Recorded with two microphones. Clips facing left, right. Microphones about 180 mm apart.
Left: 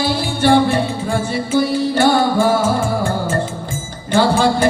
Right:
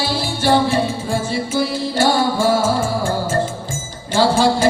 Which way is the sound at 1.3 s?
60° left (ahead or behind).